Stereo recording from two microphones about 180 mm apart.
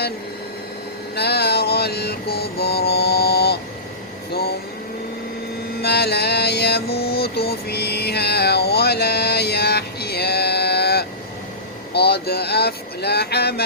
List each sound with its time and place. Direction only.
1.1 s vehicle: 65° left (ahead or behind)
4.3 s speech: 60° left (ahead or behind)
5.8 s a sound: 65° left (ahead or behind)